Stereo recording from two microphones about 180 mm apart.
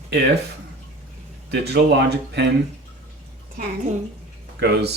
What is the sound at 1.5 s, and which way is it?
Speech, 70° right (ahead or behind).